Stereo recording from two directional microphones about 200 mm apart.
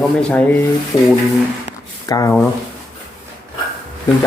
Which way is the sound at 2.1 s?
15° left (ahead or behind).